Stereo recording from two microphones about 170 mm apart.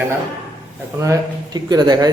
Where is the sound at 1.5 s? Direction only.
25° right (ahead or behind).